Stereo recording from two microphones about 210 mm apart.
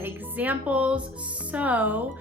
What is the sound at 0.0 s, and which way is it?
A woman's voice, 10° right (ahead or behind).